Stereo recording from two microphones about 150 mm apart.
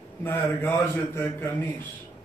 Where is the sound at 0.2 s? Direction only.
15° left (ahead or behind).